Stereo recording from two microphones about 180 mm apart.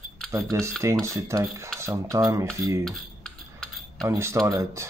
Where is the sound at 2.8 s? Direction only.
5° left (ahead or behind).